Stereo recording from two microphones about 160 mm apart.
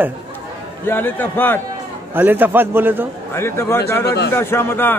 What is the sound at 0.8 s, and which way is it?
Speech, 10° left (ahead or behind).